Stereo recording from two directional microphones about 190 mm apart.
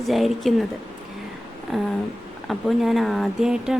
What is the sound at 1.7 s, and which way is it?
Speech, centre (ahead or behind).